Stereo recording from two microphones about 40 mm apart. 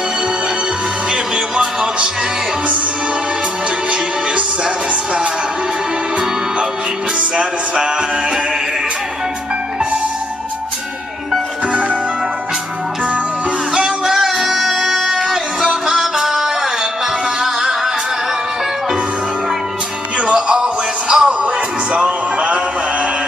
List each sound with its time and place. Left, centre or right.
1.1 s music: right
7.2 s music: right
13.7 s music: centre
20.3 s music: centre